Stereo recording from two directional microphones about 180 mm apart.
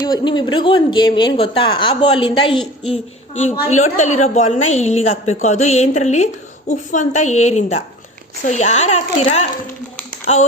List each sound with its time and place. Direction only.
0.0 s a woman's voice: 25° left (ahead or behind)